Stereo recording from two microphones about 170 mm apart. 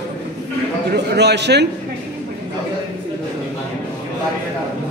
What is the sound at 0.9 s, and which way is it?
Speech, 85° right.